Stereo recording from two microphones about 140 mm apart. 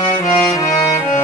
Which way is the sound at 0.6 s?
25° left (ahead or behind).